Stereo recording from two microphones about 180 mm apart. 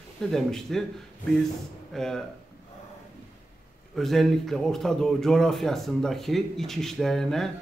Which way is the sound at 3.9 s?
Centre (ahead or behind).